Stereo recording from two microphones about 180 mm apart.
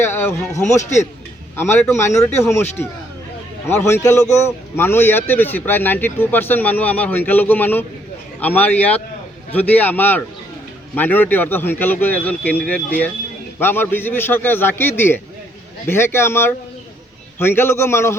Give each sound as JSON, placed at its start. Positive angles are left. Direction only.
{"t": 0.0, "sound": "speech", "side_deg": 15}
{"t": 0.8, "sound": "a man's voice", "side_deg": 40}
{"t": 1.5, "sound": "a man's voice", "side_deg": 10}
{"t": 3.7, "sound": "a man's voice", "side_deg": 15}